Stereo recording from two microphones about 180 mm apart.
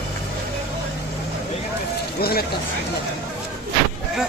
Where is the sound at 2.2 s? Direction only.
60° left (ahead or behind).